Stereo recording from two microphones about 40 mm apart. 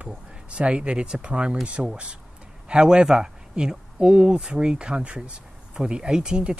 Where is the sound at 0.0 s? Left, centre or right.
Right.